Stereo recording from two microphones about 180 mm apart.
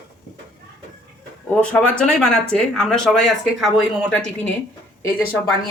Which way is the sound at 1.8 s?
5° left (ahead or behind).